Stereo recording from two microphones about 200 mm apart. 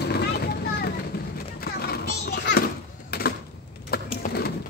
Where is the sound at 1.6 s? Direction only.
50° left (ahead or behind).